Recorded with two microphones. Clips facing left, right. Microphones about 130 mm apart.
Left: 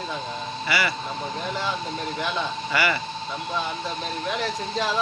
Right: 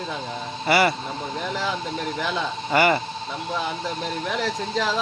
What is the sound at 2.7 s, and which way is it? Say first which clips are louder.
Speech: right 7 dB; 45° right (ahead or behind).